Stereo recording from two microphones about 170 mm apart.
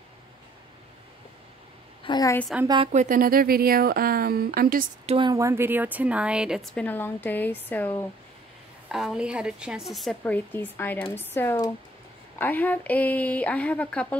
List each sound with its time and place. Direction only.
2.0 s a woman's voice: 25° left (ahead or behind)
2.9 s speech: 50° right (ahead or behind)
5.0 s a woman's voice: 30° right (ahead or behind)
5.3 s a woman's voice: 15° right (ahead or behind); by 8.0 s 10° left (ahead or behind)
8.8 s a woman's voice: 5° right (ahead or behind)